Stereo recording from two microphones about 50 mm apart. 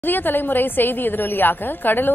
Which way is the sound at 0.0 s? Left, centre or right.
Left.